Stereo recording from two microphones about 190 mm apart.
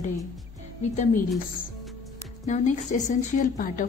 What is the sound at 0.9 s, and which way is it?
Speech, 40° left (ahead or behind).